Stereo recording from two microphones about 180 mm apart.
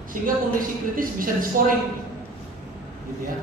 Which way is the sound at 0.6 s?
50° right (ahead or behind).